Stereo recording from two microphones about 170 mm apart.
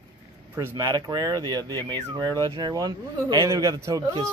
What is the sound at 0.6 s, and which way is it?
A man's voice, 20° right (ahead or behind).